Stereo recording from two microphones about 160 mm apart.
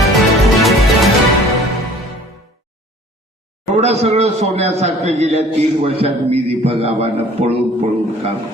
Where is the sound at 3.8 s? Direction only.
45° right (ahead or behind).